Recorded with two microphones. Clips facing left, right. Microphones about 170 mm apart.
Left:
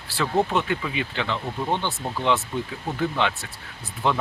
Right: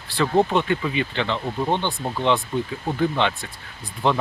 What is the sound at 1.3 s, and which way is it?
Speech, 25° right (ahead or behind).